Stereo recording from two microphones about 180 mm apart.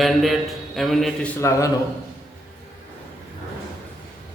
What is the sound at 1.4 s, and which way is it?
Speech, 15° left (ahead or behind).